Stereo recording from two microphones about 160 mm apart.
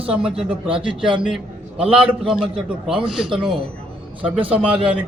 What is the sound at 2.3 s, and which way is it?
A man's voice, 5° right (ahead or behind).